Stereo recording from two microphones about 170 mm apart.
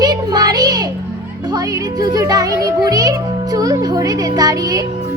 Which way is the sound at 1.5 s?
20° right (ahead or behind).